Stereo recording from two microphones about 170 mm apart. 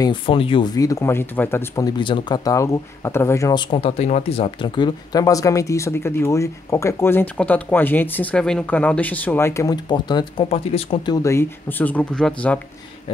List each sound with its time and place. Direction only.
0.0 s speech: 30° left (ahead or behind)
3.7 s speech: 35° left (ahead or behind)
11.2 s speech: 15° left (ahead or behind)